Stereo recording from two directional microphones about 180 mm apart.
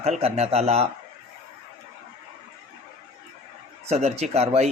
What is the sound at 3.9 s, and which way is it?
Speech, 35° right (ahead or behind).